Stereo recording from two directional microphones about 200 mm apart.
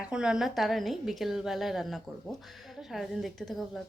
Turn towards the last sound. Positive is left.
turn(degrees=0)  # may be behind; listen again after turning